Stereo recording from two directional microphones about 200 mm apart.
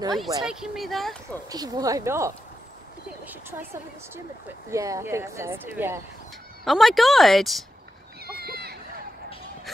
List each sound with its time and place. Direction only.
0.4 s speech: centre (ahead or behind)
1.5 s speech: 20° right (ahead or behind)
4.6 s speech: 15° right (ahead or behind)
6.6 s speech: centre (ahead or behind)
8.3 s a sound: 50° right (ahead or behind)